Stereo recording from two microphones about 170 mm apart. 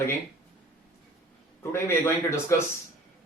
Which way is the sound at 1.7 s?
15° left (ahead or behind).